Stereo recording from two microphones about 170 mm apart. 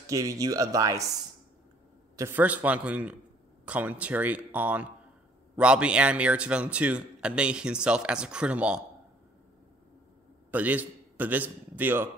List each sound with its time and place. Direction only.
0.0 s speech: 20° right (ahead or behind)
2.1 s speech: 15° right (ahead or behind)
10.5 s a man's voice: 10° right (ahead or behind)